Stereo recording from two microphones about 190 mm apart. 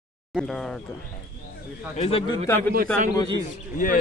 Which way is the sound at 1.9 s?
35° left (ahead or behind).